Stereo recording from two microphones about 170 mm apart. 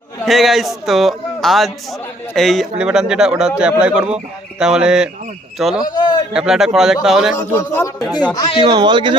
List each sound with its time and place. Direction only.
0.3 s speech: centre (ahead or behind)
5.8 s a sound: 25° left (ahead or behind)
6.3 s speech: 5° right (ahead or behind)
7.3 s speech: 15° left (ahead or behind)
8.6 s speech: 25° right (ahead or behind)